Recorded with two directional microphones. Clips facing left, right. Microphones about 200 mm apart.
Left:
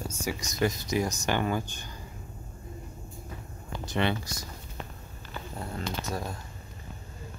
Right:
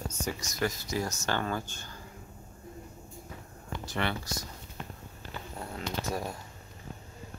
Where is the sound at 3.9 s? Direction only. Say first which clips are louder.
Left 5 dB; 20° left (ahead or behind).